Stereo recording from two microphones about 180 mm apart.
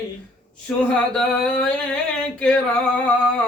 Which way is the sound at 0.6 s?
5° left (ahead or behind).